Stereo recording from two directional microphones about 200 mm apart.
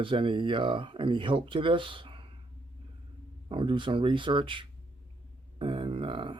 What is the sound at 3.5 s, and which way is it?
Speech, 25° right (ahead or behind).